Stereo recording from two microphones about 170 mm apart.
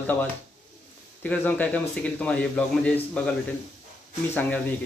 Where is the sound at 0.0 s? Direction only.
10° left (ahead or behind).